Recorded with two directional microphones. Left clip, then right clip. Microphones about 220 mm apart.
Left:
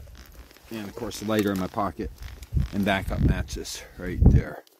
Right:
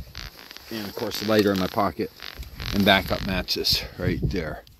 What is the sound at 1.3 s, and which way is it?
Speech, 10° right (ahead or behind).